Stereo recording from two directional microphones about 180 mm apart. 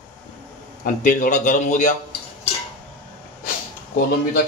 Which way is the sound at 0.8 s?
50° left (ahead or behind).